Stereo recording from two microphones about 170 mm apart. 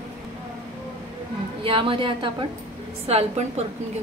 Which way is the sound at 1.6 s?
30° right (ahead or behind).